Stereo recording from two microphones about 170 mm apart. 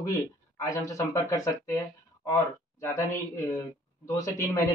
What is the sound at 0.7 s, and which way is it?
Speech, 20° left (ahead or behind).